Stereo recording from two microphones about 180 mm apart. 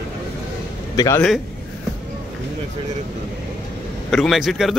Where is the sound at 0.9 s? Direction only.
20° left (ahead or behind).